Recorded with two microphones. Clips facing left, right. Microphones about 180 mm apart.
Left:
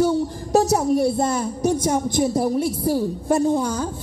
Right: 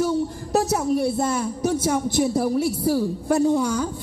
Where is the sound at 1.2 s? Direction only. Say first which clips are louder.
Left 1 dB; 35° left (ahead or behind).